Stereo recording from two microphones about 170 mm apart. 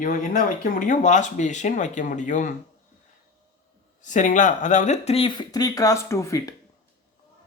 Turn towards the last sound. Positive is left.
turn(degrees=20)  # may be behind; listen again after turning